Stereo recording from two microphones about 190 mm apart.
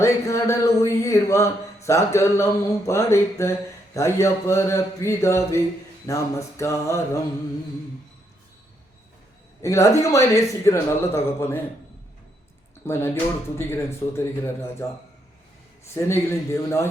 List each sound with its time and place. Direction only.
0.0 s speech: 15° left (ahead or behind)
9.6 s speech: 15° left (ahead or behind)
12.8 s speech: 15° left (ahead or behind)
16.0 s speech: 15° left (ahead or behind)